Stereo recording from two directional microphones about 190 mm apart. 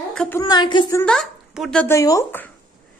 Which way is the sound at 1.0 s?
5° left (ahead or behind).